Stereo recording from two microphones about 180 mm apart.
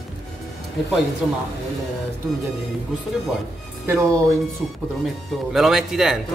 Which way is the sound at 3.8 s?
15° right (ahead or behind).